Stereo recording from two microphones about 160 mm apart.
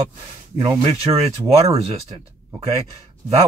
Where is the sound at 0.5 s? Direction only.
40° right (ahead or behind).